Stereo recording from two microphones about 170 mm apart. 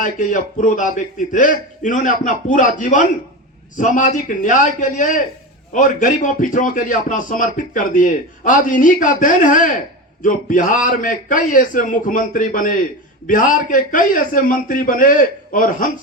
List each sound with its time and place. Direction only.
0.0 s a man's voice: 50° left (ahead or behind)